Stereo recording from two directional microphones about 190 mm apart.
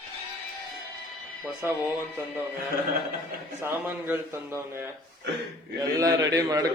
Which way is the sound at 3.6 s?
10° right (ahead or behind).